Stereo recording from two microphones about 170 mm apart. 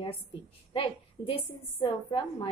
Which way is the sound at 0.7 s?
35° left (ahead or behind).